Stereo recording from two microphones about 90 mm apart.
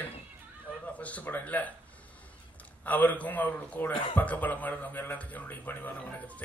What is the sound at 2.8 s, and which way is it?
A man's voice, 20° left (ahead or behind).